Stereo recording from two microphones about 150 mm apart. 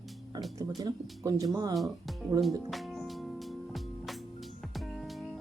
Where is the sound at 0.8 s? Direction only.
25° right (ahead or behind).